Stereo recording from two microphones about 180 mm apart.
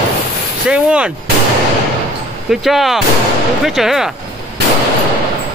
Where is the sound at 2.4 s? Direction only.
Centre (ahead or behind).